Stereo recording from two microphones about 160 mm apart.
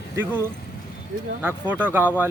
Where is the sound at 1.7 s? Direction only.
10° right (ahead or behind).